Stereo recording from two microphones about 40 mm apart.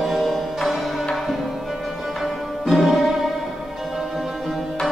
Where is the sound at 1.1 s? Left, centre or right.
Centre.